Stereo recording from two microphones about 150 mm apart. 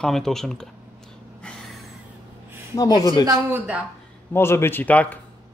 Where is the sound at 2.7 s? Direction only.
25° left (ahead or behind).